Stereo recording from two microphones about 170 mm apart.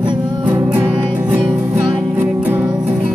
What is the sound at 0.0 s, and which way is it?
Music, 25° right (ahead or behind).